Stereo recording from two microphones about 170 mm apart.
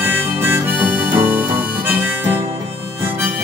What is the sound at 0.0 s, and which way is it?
Harmonica, 15° right (ahead or behind).